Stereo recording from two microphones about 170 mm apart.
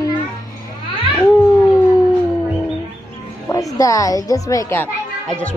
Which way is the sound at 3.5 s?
20° left (ahead or behind).